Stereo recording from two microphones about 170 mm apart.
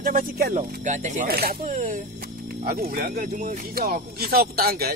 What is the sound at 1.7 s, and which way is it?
Speech, 50° right (ahead or behind).